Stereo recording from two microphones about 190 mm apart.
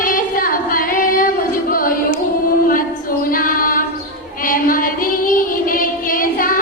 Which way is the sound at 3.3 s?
50° left (ahead or behind).